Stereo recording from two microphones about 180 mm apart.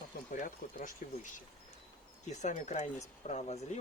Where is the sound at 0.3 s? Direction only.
45° left (ahead or behind).